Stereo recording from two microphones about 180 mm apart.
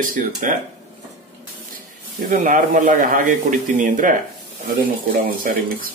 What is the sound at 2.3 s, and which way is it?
Speech, 50° right (ahead or behind).